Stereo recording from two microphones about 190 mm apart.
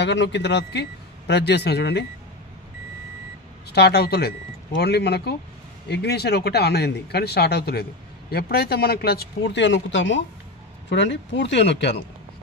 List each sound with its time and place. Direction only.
0.0 s a man's voice: 65° left (ahead or behind)
3.7 s a man's voice: 60° left (ahead or behind)